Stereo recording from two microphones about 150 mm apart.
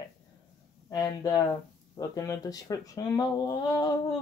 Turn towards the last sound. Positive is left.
turn(degrees=25)  # may be behind; listen again after turning